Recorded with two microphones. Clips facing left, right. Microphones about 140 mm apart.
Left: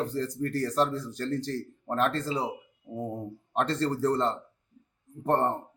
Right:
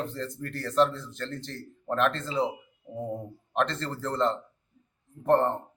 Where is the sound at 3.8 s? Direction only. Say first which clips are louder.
Left 3 dB; 40° left (ahead or behind).